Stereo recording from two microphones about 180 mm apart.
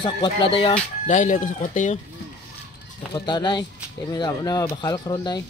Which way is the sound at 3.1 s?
25° left (ahead or behind).